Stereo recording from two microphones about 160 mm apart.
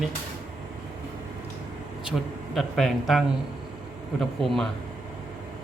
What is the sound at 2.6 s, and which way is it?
Speech, centre (ahead or behind).